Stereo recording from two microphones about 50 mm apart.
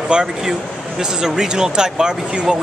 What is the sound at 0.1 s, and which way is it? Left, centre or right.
Speech, centre.